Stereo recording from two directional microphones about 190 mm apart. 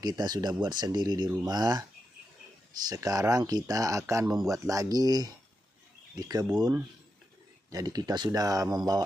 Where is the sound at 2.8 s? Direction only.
20° right (ahead or behind).